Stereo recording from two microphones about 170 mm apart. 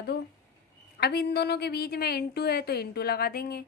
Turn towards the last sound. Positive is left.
turn(degrees=65)  # may be behind; listen again after turning